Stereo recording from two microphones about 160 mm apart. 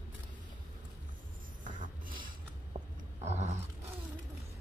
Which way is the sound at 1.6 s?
55° right (ahead or behind).